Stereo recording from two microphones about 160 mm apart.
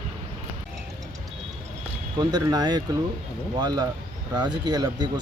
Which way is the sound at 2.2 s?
25° right (ahead or behind).